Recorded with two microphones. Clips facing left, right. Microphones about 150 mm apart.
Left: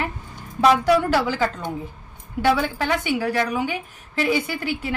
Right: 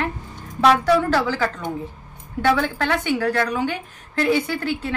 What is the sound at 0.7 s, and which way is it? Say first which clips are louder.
A woman's voice: even; 10° left (ahead or behind).